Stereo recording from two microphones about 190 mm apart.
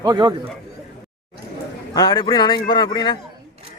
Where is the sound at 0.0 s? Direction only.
20° right (ahead or behind).